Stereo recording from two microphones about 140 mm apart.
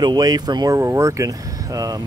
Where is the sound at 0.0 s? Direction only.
30° right (ahead or behind).